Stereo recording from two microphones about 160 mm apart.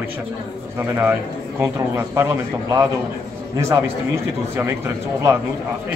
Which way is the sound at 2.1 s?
20° right (ahead or behind).